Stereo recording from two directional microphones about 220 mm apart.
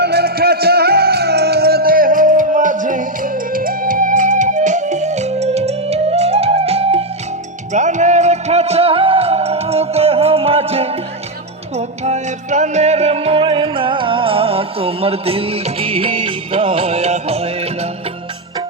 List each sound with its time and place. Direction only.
0.0 s music: 45° right (ahead or behind); by 17.7 s 25° right (ahead or behind)